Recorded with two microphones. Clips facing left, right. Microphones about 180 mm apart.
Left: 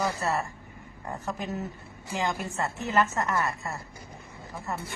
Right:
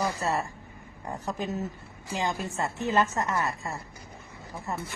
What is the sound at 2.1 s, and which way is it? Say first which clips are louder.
A woman's voice: even; 15° right (ahead or behind).